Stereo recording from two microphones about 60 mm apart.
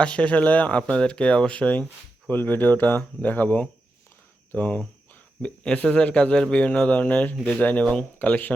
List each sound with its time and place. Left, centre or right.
0.0 s speech: left